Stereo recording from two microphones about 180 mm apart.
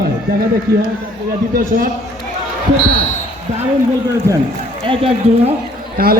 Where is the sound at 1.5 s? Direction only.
55° right (ahead or behind).